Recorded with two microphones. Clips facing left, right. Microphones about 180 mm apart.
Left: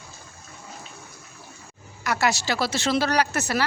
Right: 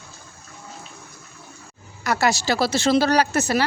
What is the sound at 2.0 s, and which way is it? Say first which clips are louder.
Speech: right 3 dB; 35° right (ahead or behind).